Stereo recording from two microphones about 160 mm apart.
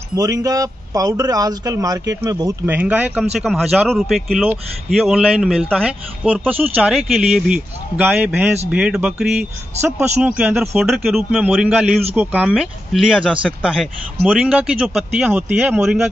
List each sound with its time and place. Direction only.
0.1 s a man's voice: 20° right (ahead or behind); by 16.1 s 5° right (ahead or behind)